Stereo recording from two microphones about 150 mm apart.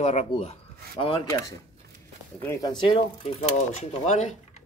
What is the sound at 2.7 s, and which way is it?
Speech, 35° left (ahead or behind).